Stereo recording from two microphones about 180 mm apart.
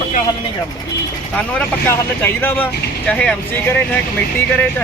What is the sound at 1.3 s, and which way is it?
Speech, 10° left (ahead or behind).